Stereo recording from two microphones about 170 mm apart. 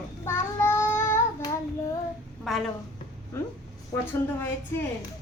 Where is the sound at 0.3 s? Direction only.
15° left (ahead or behind).